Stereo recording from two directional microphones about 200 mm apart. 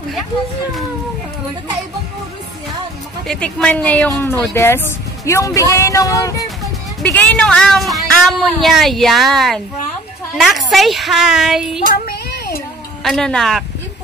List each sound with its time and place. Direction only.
3.3 s speech: 5° left (ahead or behind)
12.0 s a sound: 50° left (ahead or behind)
13.0 s speech: centre (ahead or behind)